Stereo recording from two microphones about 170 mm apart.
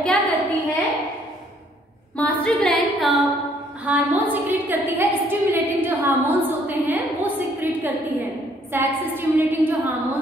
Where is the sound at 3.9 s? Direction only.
10° right (ahead or behind).